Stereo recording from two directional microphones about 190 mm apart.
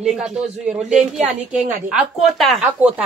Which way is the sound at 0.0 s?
5° right (ahead or behind).